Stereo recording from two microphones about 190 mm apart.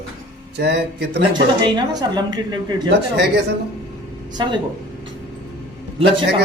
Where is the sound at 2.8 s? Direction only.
65° right (ahead or behind).